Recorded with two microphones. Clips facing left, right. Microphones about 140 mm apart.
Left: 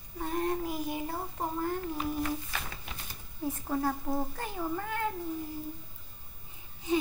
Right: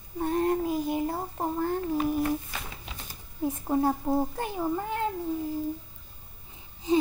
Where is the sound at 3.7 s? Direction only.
30° right (ahead or behind).